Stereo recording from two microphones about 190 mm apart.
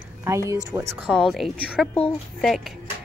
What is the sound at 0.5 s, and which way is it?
Speech, 15° right (ahead or behind).